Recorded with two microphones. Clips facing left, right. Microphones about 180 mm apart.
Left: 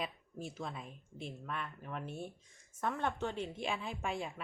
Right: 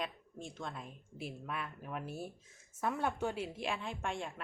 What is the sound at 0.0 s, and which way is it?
Speech, 5° left (ahead or behind).